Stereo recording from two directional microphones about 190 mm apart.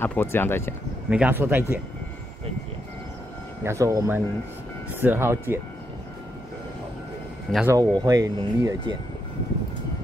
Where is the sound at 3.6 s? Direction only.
15° right (ahead or behind).